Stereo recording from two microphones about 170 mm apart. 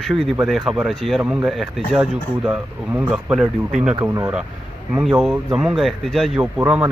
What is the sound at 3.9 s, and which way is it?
Speech, 15° right (ahead or behind).